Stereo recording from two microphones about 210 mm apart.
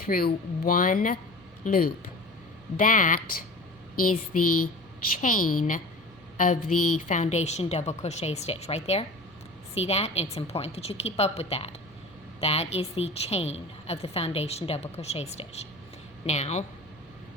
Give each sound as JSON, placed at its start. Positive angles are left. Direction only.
{"t": 0.0, "sound": "a woman's voice", "side_deg": 45}